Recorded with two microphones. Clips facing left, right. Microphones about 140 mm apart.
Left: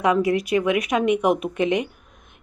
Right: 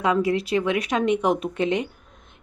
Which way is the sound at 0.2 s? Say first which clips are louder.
Left 2 dB; 30° right (ahead or behind).